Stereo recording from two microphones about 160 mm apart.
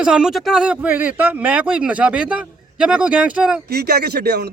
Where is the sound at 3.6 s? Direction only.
80° right.